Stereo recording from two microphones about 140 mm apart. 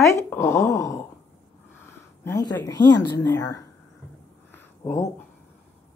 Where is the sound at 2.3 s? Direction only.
25° left (ahead or behind).